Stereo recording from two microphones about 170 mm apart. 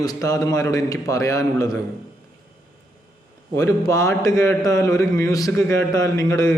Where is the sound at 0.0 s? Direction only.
20° left (ahead or behind).